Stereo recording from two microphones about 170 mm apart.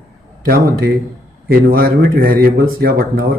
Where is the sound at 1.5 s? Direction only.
60° right (ahead or behind).